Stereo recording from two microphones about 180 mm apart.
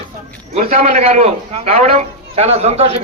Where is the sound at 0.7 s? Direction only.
35° right (ahead or behind).